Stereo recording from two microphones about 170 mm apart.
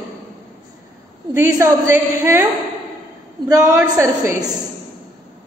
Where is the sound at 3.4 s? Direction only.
20° right (ahead or behind).